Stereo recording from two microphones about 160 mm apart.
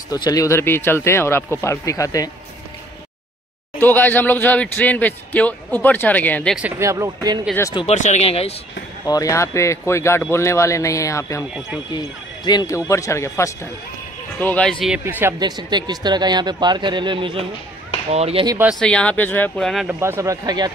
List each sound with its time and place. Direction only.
0.1 s speech: 20° left (ahead or behind)
3.7 s speech: 10° left (ahead or behind)
6.8 s speech: 20° right (ahead or behind)
7.7 s speech: 40° left (ahead or behind)
9.0 s speech: 20° left (ahead or behind)
12.4 s speech: 25° left (ahead or behind)
14.4 s speech: 5° left (ahead or behind)
14.9 s speech: 10° right (ahead or behind)
15.3 s speech: 25° right (ahead or behind)
18.8 s speech: 5° left (ahead or behind)
19.9 s speech: 15° right (ahead or behind)